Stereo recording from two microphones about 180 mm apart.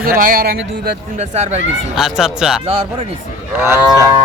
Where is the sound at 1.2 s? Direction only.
40° right (ahead or behind).